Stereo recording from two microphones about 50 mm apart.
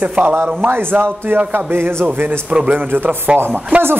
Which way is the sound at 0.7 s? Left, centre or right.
Right.